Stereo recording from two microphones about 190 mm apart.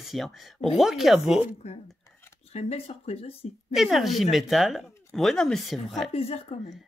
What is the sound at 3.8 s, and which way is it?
Speech, centre (ahead or behind).